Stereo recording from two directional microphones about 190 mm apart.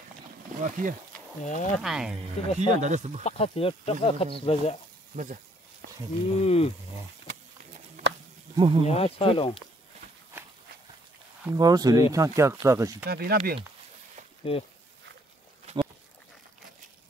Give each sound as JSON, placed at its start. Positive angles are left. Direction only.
{"t": 0.7, "sound": "speech", "side_deg": -45}
{"t": 1.4, "sound": "speech", "side_deg": 40}
{"t": 1.8, "sound": "speech", "side_deg": -5}
{"t": 2.4, "sound": "speech", "side_deg": 35}
{"t": 2.7, "sound": "speech", "side_deg": -40}
{"t": 3.3, "sound": "speech", "side_deg": 30}
{"t": 5.1, "sound": "a sound", "side_deg": -40}
{"t": 6.2, "sound": "speech", "side_deg": 30}
{"t": 8.5, "sound": "speech", "side_deg": -25}
{"t": 8.8, "sound": "speech", "side_deg": 30}
{"t": 11.5, "sound": "speech", "side_deg": -20}
{"t": 13.0, "sound": "speech", "side_deg": -55}
{"t": 14.5, "sound": "speech", "side_deg": 30}
{"t": 15.6, "sound": "a sound", "side_deg": -25}